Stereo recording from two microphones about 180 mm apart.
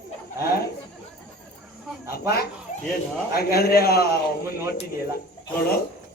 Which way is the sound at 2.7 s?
45° left (ahead or behind).